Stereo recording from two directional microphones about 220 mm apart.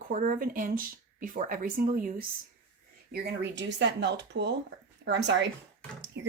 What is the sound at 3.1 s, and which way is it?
Speech, 50° right (ahead or behind).